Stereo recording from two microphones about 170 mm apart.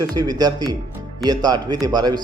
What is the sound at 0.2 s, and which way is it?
Speech, 20° right (ahead or behind).